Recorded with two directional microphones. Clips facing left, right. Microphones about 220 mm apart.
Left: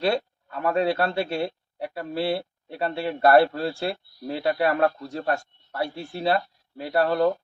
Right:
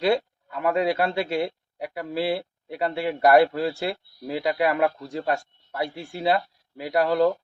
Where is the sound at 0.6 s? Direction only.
15° right (ahead or behind).